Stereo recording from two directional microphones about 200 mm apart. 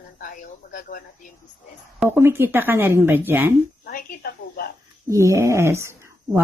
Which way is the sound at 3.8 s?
45° left (ahead or behind).